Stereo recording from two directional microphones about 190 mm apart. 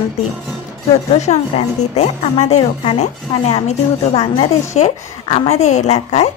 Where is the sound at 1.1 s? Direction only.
35° left (ahead or behind).